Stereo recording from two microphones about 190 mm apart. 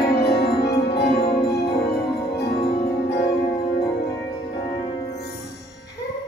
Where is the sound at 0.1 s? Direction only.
60° left (ahead or behind).